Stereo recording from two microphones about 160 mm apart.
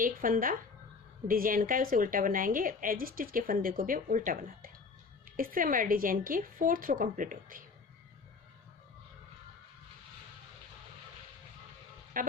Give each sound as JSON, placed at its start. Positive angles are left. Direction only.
{"t": 0.0, "sound": "a woman's voice", "side_deg": -60}
{"t": 12.1, "sound": "speech", "side_deg": -60}